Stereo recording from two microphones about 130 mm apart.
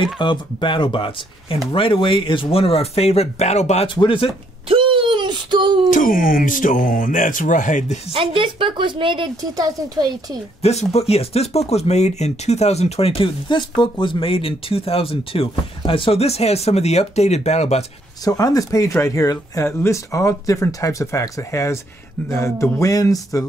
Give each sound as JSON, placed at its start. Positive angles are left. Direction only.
{"t": 0.0, "sound": "speech", "side_deg": 40}
{"t": 3.8, "sound": "speech", "side_deg": 40}
{"t": 4.6, "sound": "a sound", "side_deg": -40}
{"t": 5.9, "sound": "speech", "side_deg": 90}
{"t": 8.1, "sound": "a woman's voice", "side_deg": -45}
{"t": 10.6, "sound": "speech", "side_deg": 55}
{"t": 18.2, "sound": "speech", "side_deg": 30}